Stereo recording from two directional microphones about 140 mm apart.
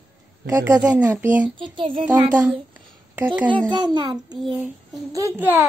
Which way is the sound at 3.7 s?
35° right (ahead or behind).